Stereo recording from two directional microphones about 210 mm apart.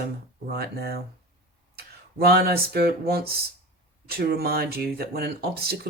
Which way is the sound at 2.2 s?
45° right (ahead or behind).